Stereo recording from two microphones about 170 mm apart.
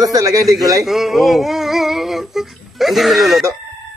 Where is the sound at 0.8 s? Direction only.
Centre (ahead or behind).